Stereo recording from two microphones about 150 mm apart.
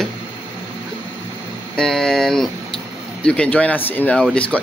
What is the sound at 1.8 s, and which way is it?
Speech, 5° left (ahead or behind).